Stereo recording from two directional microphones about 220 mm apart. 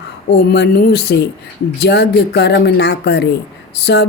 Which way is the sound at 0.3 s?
45° left (ahead or behind).